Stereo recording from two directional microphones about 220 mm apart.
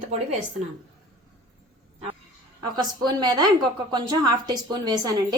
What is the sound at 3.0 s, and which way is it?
A woman's voice, 20° right (ahead or behind).